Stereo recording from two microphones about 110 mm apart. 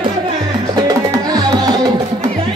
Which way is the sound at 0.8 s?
35° right (ahead or behind).